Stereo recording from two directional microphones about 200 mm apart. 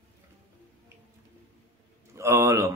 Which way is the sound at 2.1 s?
15° right (ahead or behind).